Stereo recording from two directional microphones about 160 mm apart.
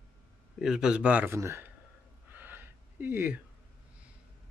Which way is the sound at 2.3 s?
10° right (ahead or behind).